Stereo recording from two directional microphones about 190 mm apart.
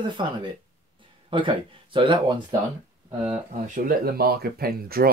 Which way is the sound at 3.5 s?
45° right (ahead or behind).